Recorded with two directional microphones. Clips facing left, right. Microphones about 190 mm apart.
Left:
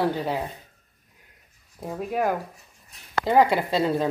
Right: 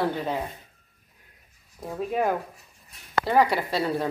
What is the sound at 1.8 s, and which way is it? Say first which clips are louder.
Speech: even; 5° left (ahead or behind).